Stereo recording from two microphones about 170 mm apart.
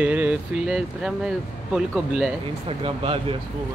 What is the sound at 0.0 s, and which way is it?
Speech, 10° right (ahead or behind).